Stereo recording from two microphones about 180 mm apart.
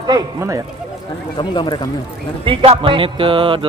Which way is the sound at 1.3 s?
25° left (ahead or behind).